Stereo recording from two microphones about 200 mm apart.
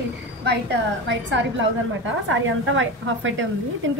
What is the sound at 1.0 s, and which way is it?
A woman's voice, 65° right (ahead or behind).